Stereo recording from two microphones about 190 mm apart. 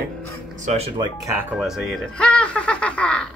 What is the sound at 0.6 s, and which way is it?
Speech, 35° right (ahead or behind).